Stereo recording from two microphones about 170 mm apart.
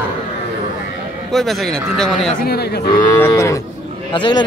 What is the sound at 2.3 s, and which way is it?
Speech, 70° left (ahead or behind).